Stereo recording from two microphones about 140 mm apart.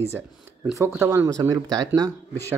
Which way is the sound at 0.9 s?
20° right (ahead or behind).